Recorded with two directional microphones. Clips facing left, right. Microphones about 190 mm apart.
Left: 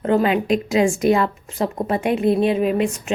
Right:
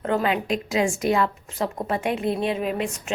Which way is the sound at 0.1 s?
15° left (ahead or behind).